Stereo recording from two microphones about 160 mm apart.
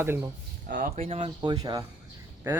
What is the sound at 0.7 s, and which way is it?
Speech, 85° right.